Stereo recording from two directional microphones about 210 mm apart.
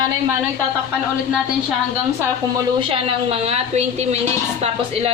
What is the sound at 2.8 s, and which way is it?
A woman's voice, 25° right (ahead or behind).